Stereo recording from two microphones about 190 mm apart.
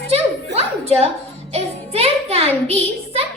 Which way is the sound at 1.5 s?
30° right (ahead or behind).